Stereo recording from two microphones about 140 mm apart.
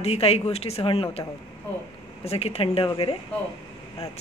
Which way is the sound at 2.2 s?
45° left (ahead or behind).